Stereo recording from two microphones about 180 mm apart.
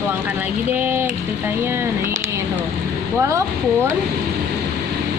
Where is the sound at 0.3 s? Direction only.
10° right (ahead or behind).